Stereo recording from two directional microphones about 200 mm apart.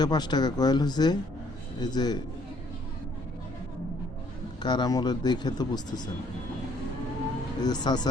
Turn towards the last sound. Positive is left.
turn(degrees=20)  # may be behind; listen again after turning